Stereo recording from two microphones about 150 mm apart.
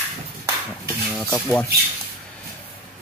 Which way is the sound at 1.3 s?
5° left (ahead or behind).